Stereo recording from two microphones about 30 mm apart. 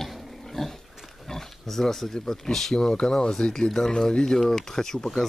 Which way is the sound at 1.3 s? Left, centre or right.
Centre.